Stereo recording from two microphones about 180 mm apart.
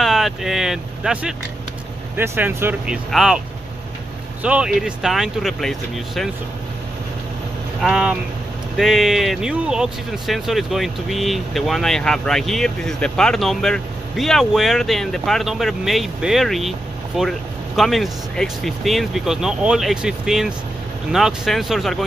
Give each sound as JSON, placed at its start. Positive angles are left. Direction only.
{"t": 0.0, "sound": "vehicle", "side_deg": 0}
{"t": 2.1, "sound": "speech", "side_deg": -10}
{"t": 7.8, "sound": "speech", "side_deg": -5}